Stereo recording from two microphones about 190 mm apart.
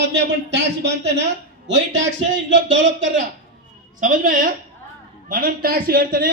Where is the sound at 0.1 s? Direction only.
65° right (ahead or behind).